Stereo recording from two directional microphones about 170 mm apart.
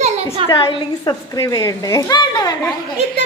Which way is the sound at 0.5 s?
25° left (ahead or behind).